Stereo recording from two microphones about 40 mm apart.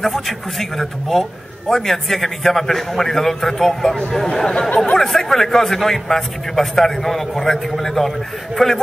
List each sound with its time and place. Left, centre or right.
0.0 s a man's voice: centre
4.3 s speech: left
4.9 s a man's voice: centre